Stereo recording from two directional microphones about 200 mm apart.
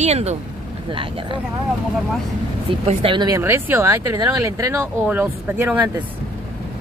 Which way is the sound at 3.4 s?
10° right (ahead or behind).